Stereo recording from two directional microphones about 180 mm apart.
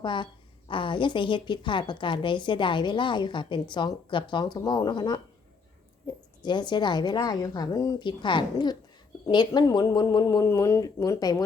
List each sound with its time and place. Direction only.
0.0 s a woman's voice: 25° left (ahead or behind)
6.4 s a woman's voice: 25° left (ahead or behind)